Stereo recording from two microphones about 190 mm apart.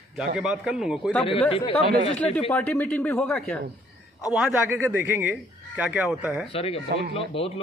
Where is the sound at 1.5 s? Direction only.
30° left (ahead or behind).